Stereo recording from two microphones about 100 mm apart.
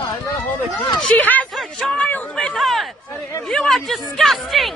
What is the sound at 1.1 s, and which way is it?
A man's voice, 15° left (ahead or behind).